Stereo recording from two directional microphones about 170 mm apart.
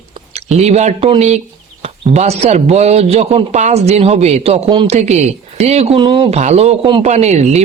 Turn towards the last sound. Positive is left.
turn(degrees=-40)  # may be behind; listen again after turning